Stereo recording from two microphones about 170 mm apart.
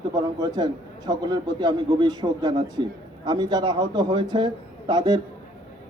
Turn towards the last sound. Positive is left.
turn(degrees=-25)  # may be behind; listen again after turning